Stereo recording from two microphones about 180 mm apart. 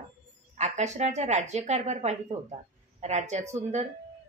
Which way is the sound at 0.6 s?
40° right (ahead or behind).